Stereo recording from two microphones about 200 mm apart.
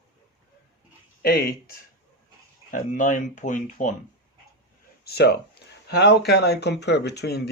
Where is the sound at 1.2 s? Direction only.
50° left (ahead or behind).